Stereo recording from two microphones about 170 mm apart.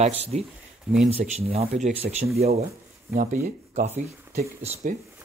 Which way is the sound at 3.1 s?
65° right (ahead or behind).